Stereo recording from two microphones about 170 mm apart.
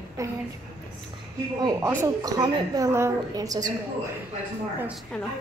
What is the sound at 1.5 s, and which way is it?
A woman's voice, 20° right (ahead or behind).